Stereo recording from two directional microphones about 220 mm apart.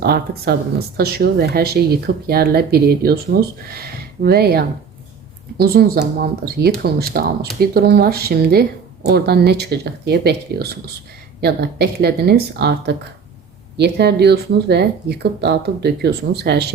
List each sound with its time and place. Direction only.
0.0 s a woman's voice: 45° right (ahead or behind)